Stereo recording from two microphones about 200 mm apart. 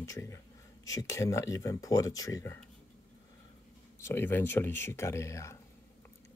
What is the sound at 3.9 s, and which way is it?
Speech, 10° left (ahead or behind).